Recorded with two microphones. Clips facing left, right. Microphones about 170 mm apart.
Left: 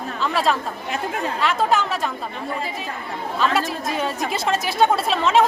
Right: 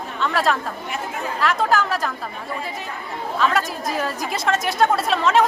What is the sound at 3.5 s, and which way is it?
A woman's voice, 25° left (ahead or behind).